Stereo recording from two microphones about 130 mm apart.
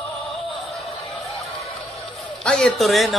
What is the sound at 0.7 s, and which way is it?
Music, centre (ahead or behind).